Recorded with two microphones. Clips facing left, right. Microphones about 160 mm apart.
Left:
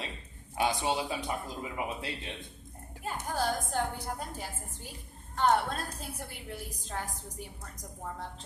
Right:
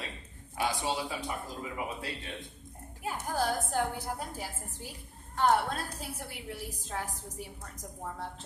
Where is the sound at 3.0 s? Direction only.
5° right (ahead or behind).